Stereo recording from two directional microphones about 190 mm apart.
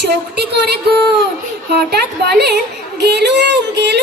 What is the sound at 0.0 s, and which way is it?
A child's voice, 60° right (ahead or behind).